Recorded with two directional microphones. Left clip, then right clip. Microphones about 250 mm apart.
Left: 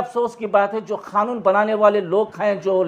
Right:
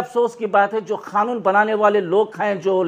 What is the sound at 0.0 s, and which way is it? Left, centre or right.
A man's voice, right.